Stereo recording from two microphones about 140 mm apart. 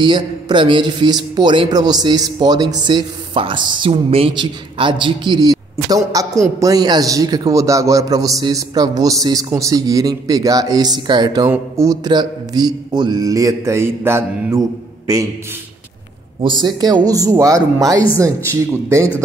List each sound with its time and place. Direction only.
0.0 s speech: 35° right (ahead or behind)
16.6 s speech: 30° right (ahead or behind)